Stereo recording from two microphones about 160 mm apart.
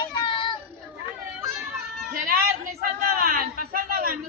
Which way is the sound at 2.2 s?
60° right (ahead or behind).